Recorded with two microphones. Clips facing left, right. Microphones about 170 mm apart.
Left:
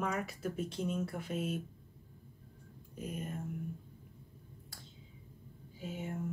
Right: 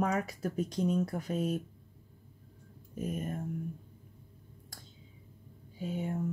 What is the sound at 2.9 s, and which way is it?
Speech, 45° right (ahead or behind).